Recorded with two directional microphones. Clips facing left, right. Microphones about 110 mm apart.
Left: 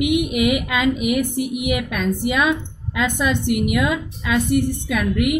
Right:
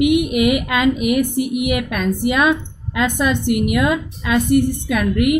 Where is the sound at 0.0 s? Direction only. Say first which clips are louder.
Right 3 dB; 50° right (ahead or behind).